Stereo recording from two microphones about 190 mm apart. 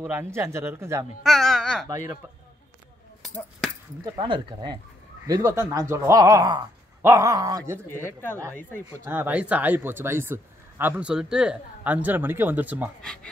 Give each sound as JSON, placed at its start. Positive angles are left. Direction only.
{"t": 0.0, "sound": "speech", "side_deg": -15}
{"t": 1.2, "sound": "speech", "side_deg": 0}
{"t": 4.0, "sound": "speech", "side_deg": -25}
{"t": 7.9, "sound": "speech", "side_deg": 10}
{"t": 8.9, "sound": "speech", "side_deg": -10}
{"t": 13.0, "sound": "speech", "side_deg": 5}